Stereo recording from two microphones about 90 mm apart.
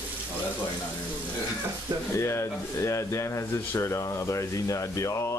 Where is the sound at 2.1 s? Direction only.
30° left (ahead or behind).